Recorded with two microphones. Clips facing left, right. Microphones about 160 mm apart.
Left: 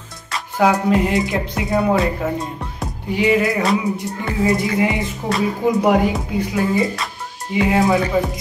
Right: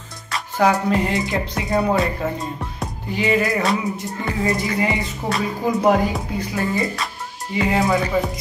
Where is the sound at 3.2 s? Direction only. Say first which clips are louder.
Left 3 dB; 10° left (ahead or behind).